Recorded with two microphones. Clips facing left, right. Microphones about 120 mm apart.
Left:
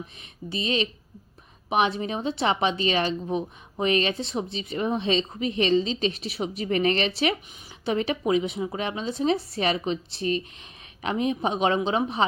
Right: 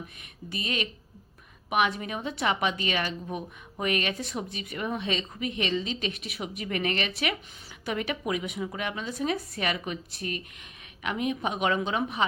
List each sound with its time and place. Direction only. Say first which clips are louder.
0.2 s a woman's voice: left 7 dB; 25° left (ahead or behind)